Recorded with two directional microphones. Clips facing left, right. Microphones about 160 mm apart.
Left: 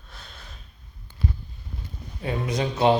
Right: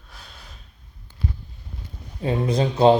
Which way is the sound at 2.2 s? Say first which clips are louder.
Right 5 dB; 30° right (ahead or behind).